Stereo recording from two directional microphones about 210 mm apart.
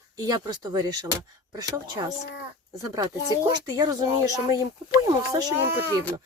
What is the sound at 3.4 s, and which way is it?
Speech, 20° right (ahead or behind).